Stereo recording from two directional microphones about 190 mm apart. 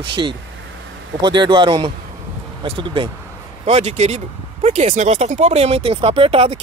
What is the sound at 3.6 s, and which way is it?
Speech, 35° right (ahead or behind).